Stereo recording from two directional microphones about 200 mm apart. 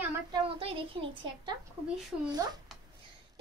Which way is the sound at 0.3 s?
25° right (ahead or behind).